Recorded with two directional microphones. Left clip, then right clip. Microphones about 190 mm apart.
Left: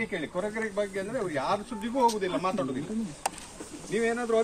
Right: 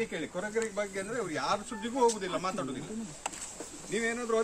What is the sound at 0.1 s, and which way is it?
Speech, 25° right (ahead or behind).